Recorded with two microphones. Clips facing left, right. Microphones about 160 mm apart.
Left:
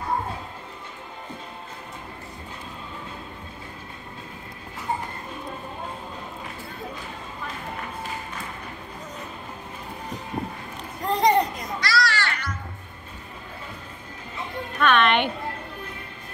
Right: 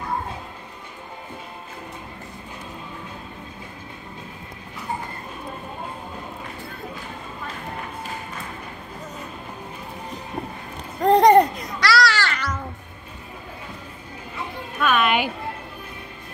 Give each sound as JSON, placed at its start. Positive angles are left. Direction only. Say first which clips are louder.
{"t": 11.0, "sound": "babbling", "louder": "right 7 dB", "side_deg": -60}
{"t": 11.8, "sound": "children playing", "louder": "right 5 dB", "side_deg": -90}
{"t": 14.8, "sound": "a sound", "louder": "even", "side_deg": -5}